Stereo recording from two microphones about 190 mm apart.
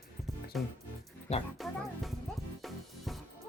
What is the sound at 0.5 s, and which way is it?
Speech, centre (ahead or behind).